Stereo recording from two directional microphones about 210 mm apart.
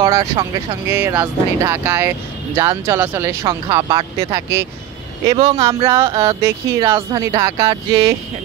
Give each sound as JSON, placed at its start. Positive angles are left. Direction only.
{"t": 0.0, "sound": "speech", "side_deg": -15}
{"t": 5.3, "sound": "speech", "side_deg": -25}
{"t": 5.7, "sound": "speech", "side_deg": -15}